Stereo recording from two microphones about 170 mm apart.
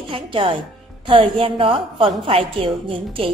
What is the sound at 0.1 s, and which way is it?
A woman's voice, 30° right (ahead or behind).